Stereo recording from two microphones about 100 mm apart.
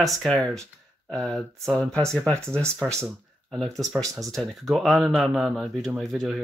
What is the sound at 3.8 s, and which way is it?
Speech, centre (ahead or behind).